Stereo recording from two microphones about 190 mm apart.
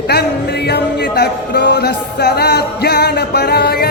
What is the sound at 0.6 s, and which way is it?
Speech, 60° left (ahead or behind).